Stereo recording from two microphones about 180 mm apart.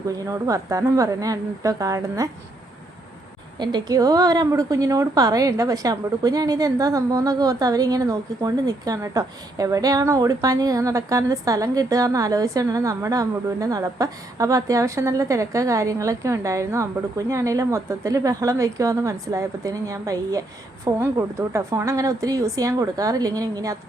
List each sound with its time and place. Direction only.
0.3 s a woman's voice: 15° right (ahead or behind)
3.6 s a woman's voice: 25° right (ahead or behind)